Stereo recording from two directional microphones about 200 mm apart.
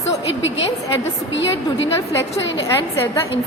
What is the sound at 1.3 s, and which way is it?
Speech, 65° left (ahead or behind).